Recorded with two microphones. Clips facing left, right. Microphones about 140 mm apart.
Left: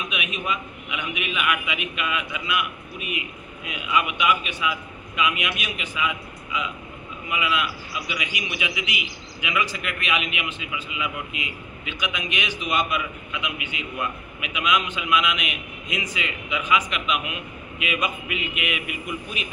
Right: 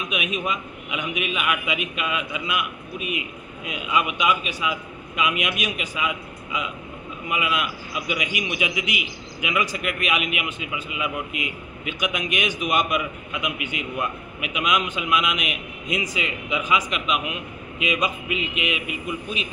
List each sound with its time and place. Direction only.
0.1 s a man's voice: 40° right (ahead or behind)
3.6 s a man's voice: 40° right (ahead or behind)